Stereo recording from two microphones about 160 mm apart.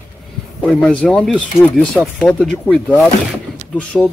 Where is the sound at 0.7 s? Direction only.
5° left (ahead or behind).